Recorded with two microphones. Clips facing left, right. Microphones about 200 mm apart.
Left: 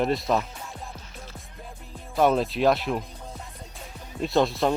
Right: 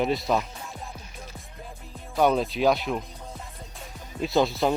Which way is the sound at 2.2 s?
Centre (ahead or behind).